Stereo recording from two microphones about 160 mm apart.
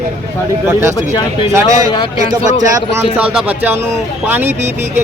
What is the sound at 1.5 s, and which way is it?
Speech, 20° right (ahead or behind).